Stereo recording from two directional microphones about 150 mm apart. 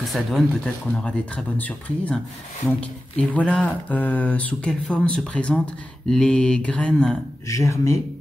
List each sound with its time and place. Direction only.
0.0 s speech: centre (ahead or behind)
2.8 s a sound: 10° left (ahead or behind)
6.0 s speech: 5° left (ahead or behind)
7.4 s speech: 20° left (ahead or behind)